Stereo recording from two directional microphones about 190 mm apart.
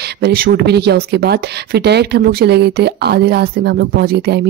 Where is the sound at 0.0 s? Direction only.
55° right (ahead or behind).